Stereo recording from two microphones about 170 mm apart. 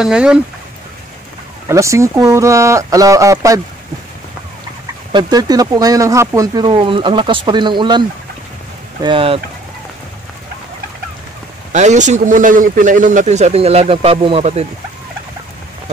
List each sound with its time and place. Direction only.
0.0 s speech: 5° right (ahead or behind)
1.7 s speech: 15° right (ahead or behind)
5.1 s speech: 25° right (ahead or behind)
9.0 s speech: 30° right (ahead or behind)
11.7 s speech: 45° right (ahead or behind)